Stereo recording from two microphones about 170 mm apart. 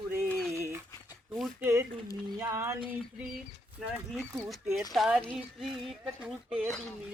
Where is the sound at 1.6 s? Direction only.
15° right (ahead or behind).